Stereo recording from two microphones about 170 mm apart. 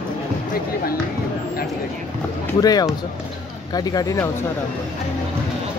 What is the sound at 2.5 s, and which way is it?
Speech, 20° left (ahead or behind).